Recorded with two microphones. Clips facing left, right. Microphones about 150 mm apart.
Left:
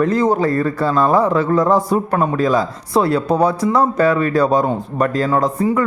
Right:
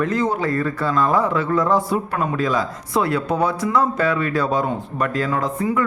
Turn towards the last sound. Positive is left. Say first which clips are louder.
# left 5 dB
turn(degrees=35)  # may be behind; listen again after turning